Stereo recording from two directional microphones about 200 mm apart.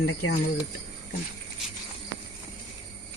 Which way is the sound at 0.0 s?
65° left (ahead or behind).